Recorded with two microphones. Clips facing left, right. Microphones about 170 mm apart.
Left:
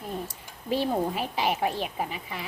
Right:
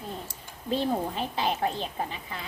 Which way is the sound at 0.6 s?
10° left (ahead or behind).